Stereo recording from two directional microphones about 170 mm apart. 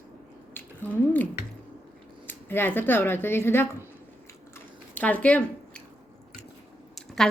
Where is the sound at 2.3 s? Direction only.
10° left (ahead or behind).